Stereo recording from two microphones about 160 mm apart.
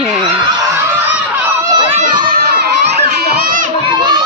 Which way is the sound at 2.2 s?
80° right.